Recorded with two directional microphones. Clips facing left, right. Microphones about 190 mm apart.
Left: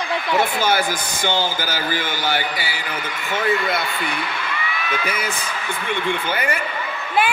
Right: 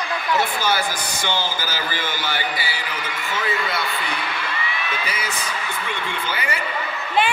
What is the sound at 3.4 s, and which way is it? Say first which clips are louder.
Speech: left 5 dB; 55° left (ahead or behind).